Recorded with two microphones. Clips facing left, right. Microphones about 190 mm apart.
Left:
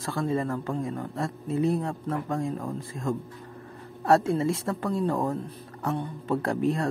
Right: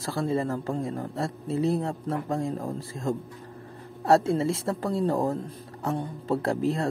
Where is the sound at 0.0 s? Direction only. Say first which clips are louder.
Right 1 dB; 30° right (ahead or behind).